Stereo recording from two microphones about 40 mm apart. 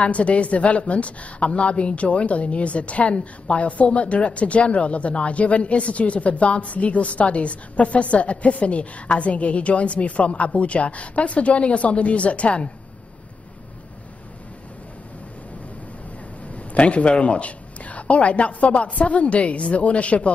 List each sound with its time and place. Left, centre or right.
0.0 s a woman's voice: left
16.4 s speech: left